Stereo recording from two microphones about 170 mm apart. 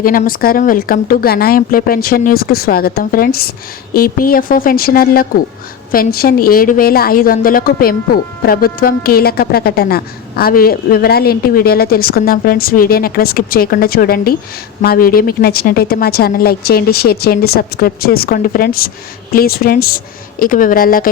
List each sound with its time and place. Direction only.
0.0 s a woman's voice: 55° left (ahead or behind)